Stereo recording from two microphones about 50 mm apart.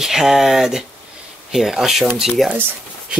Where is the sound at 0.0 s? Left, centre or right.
Centre.